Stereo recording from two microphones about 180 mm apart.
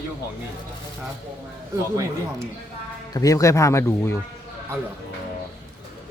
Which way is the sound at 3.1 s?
20° left (ahead or behind).